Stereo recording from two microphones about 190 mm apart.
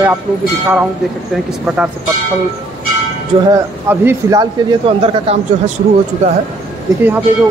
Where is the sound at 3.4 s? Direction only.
15° right (ahead or behind).